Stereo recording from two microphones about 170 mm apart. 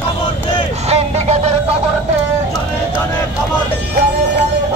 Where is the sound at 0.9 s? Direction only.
40° right (ahead or behind).